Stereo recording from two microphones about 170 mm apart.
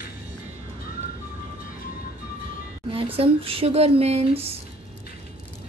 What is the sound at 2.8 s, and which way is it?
Speech, 30° right (ahead or behind).